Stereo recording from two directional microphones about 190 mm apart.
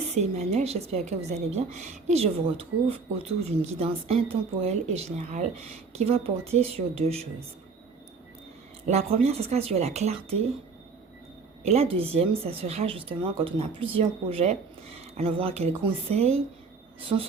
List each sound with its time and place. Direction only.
0.1 s speech: 35° right (ahead or behind)
8.9 s speech: 35° right (ahead or behind)
11.6 s speech: 35° right (ahead or behind)
17.1 s insect: 25° right (ahead or behind)